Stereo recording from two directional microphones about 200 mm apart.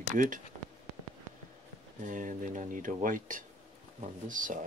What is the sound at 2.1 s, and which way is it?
Speech, 40° right (ahead or behind).